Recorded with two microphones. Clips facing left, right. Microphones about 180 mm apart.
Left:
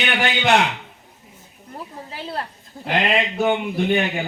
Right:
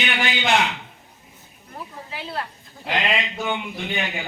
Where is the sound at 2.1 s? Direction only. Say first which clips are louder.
Left 1 dB; 40° left (ahead or behind).